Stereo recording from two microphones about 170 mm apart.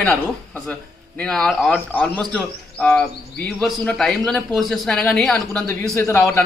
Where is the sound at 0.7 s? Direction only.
5° left (ahead or behind).